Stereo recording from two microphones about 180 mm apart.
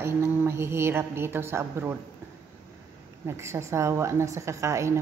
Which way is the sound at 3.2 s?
15° right (ahead or behind).